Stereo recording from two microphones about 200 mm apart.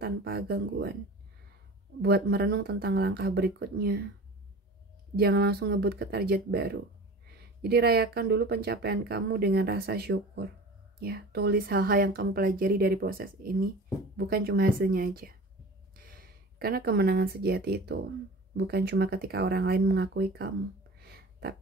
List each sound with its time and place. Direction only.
0.0 s speech: 50° right (ahead or behind)
2.0 s speech: 50° right (ahead or behind)
5.1 s speech: 50° right (ahead or behind)
21.0 s a sound: 50° right (ahead or behind)